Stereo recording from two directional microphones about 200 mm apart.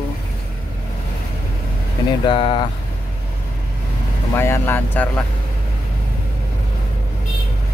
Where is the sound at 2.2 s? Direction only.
25° left (ahead or behind).